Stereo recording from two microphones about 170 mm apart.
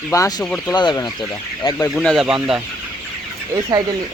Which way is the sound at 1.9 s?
Centre (ahead or behind).